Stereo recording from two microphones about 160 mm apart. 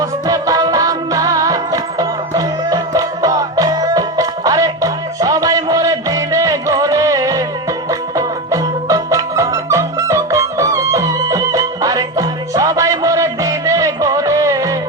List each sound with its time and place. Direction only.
0.0 s music: 20° right (ahead or behind)